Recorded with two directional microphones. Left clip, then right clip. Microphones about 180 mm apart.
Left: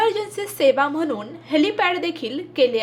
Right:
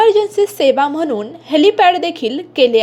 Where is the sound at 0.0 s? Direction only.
30° right (ahead or behind).